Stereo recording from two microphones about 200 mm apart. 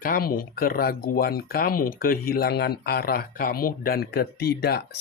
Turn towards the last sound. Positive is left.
turn(degrees=50)  # may be behind; listen again after turning